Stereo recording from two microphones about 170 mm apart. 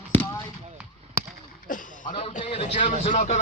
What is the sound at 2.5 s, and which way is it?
Speech, 35° left (ahead or behind).